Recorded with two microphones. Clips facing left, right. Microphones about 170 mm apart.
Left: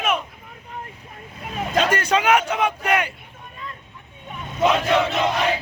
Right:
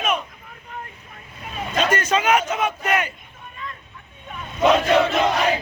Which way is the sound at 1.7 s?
10° left (ahead or behind).